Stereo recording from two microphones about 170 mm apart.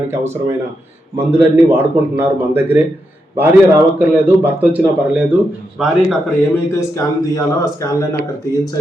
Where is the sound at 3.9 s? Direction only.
10° right (ahead or behind).